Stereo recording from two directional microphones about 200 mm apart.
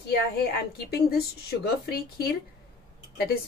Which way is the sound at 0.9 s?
50° left (ahead or behind).